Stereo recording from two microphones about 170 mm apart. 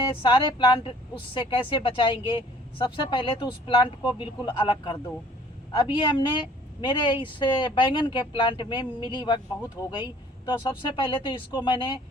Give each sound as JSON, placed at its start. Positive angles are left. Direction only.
{"t": 0.0, "sound": "speech", "side_deg": 30}